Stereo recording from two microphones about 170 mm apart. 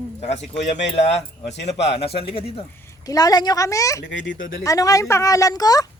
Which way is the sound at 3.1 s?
20° left (ahead or behind).